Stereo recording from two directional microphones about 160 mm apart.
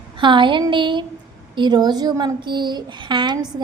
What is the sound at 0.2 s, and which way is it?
A woman's voice, 30° right (ahead or behind).